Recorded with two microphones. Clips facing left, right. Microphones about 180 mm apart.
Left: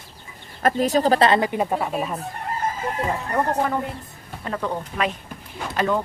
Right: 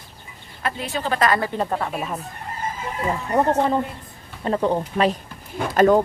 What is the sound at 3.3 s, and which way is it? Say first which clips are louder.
Speech: right 5 dB; 20° right (ahead or behind).